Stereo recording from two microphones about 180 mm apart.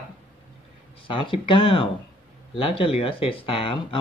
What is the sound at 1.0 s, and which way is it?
Speech, 30° left (ahead or behind).